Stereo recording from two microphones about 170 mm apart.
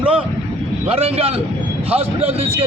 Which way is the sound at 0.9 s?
35° right (ahead or behind).